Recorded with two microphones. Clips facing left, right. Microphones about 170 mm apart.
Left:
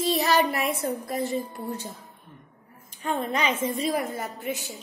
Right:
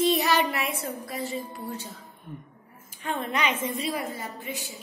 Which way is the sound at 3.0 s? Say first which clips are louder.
Left 2 dB; 35° left (ahead or behind).